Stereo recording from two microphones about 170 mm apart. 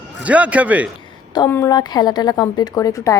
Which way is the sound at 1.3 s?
15° left (ahead or behind).